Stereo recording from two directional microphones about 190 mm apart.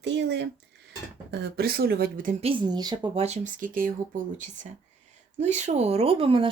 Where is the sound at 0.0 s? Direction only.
65° right (ahead or behind).